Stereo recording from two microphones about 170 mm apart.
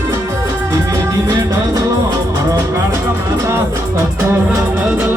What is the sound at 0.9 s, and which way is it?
Music, 20° right (ahead or behind).